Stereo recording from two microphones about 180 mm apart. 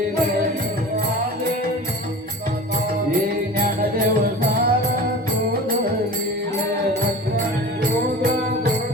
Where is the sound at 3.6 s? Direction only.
55° right (ahead or behind).